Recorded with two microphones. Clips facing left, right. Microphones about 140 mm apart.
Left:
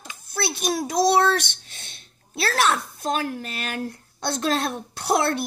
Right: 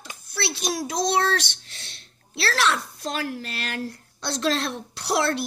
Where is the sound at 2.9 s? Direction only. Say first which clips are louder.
Left 3 dB; 50° left (ahead or behind).